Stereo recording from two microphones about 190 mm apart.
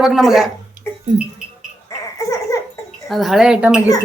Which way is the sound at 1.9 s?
15° left (ahead or behind).